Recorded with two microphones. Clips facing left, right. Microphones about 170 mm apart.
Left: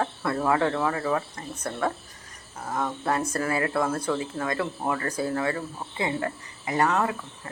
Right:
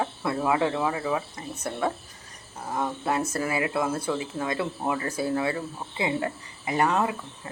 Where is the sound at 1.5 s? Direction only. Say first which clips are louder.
Even; 25° right (ahead or behind).